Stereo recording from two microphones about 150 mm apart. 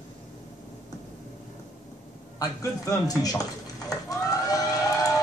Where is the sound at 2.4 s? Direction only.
20° left (ahead or behind).